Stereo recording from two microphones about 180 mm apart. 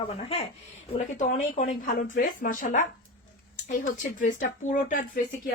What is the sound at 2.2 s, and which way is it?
Speech, 50° left (ahead or behind).